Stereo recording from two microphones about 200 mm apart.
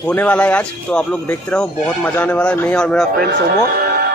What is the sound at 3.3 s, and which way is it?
Speech, 50° right (ahead or behind).